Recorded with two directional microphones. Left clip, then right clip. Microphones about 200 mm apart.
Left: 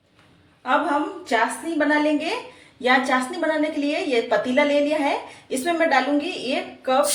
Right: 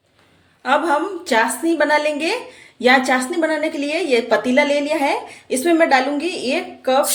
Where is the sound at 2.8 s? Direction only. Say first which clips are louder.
Right 5 dB; 50° right (ahead or behind).